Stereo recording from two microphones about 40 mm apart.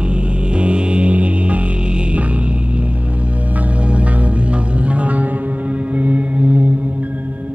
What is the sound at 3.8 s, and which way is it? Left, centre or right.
Music, right.